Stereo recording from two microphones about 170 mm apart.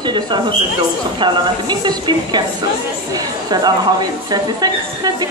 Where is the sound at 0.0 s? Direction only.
25° right (ahead or behind).